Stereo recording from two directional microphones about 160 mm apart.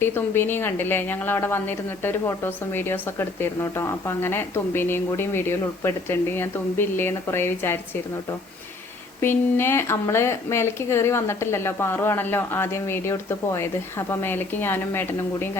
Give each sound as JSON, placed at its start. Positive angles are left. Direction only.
{"t": 0.0, "sound": "a woman's voice", "side_deg": 15}
{"t": 9.2, "sound": "a woman's voice", "side_deg": 15}